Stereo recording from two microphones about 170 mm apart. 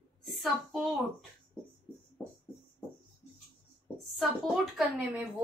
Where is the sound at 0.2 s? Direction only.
Centre (ahead or behind).